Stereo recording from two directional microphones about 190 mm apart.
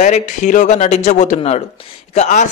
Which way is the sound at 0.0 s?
40° left (ahead or behind).